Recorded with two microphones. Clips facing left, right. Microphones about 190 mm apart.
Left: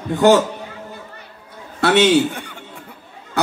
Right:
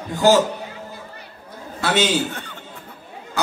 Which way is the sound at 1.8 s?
60° left (ahead or behind).